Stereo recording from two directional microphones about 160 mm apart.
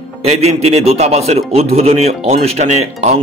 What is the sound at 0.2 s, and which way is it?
A man's voice, 40° right (ahead or behind).